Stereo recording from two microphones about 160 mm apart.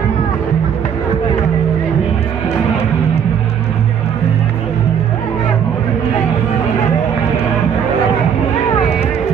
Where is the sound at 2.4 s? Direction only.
15° left (ahead or behind).